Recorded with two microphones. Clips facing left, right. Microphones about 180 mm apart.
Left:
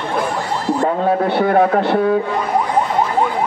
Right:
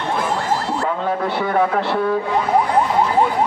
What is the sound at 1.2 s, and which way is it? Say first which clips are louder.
Speech: left 4 dB; 50° left (ahead or behind).